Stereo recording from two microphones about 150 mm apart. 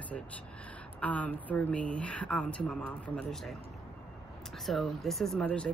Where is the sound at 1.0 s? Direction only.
10° left (ahead or behind).